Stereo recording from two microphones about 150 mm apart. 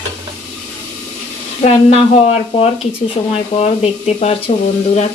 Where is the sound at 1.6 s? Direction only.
45° left (ahead or behind).